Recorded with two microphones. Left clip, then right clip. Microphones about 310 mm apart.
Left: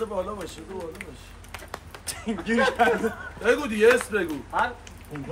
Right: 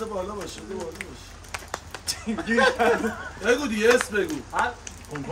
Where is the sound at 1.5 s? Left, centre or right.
Right.